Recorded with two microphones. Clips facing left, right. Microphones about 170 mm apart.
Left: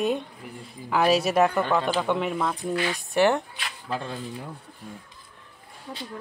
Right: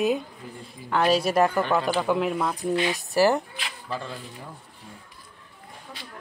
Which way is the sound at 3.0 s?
Centre (ahead or behind).